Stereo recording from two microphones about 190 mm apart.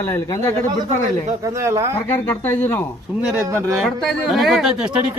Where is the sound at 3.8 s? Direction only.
Centre (ahead or behind).